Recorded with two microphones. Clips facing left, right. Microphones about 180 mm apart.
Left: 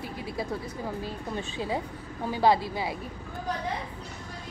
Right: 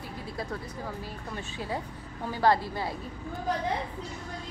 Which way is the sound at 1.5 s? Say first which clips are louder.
Left 1 dB; 20° left (ahead or behind).